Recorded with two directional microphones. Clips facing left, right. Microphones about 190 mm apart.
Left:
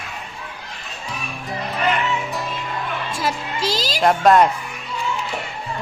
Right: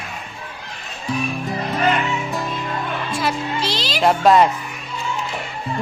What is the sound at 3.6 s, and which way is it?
Music, 45° left (ahead or behind).